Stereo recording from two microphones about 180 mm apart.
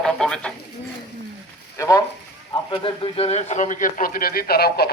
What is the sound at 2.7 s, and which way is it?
A man's voice, 30° left (ahead or behind).